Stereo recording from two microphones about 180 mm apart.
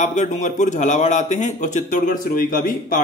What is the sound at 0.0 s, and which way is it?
Speech, 40° left (ahead or behind).